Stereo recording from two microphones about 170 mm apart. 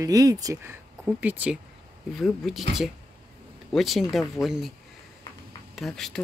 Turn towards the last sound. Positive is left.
turn(degrees=0)  # may be behind; listen again after turning